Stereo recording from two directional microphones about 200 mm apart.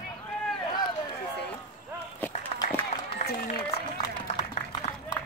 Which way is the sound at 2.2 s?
10° left (ahead or behind).